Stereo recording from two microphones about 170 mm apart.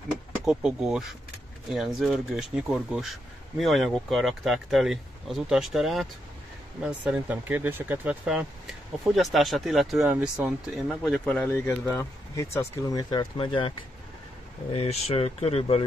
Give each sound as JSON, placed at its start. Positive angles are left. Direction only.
{"t": 0.5, "sound": "speech", "side_deg": -5}
{"t": 11.5, "sound": "speech", "side_deg": 15}